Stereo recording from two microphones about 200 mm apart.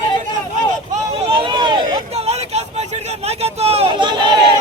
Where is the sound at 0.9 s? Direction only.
25° right (ahead or behind).